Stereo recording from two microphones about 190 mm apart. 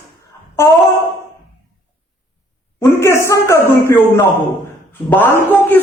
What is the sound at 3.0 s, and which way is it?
Speech, 15° left (ahead or behind).